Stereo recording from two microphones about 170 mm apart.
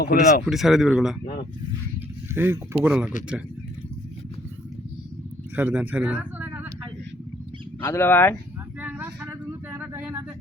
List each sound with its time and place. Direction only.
0.0 s speech: 60° left (ahead or behind)
0.4 s speech: centre (ahead or behind)
2.3 s speech: 15° right (ahead or behind)
5.5 s speech: 10° right (ahead or behind)
7.8 s speech: 15° left (ahead or behind)
8.8 s vehicle: 10° right (ahead or behind)